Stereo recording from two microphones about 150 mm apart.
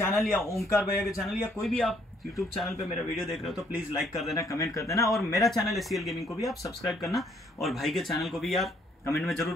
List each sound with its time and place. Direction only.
0.1 s a man's voice: centre (ahead or behind)
4.4 s speech: 20° left (ahead or behind)
4.9 s a man's voice: centre (ahead or behind)